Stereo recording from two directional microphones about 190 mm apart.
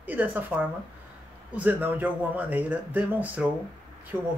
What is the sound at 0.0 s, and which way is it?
Speech, 10° right (ahead or behind).